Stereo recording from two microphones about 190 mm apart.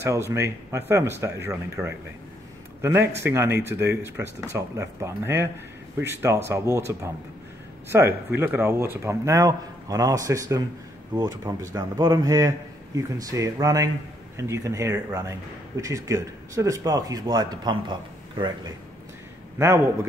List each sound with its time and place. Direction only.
0.0 s speech: 15° right (ahead or behind)